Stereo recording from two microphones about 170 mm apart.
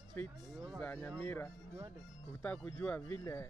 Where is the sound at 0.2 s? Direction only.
10° left (ahead or behind).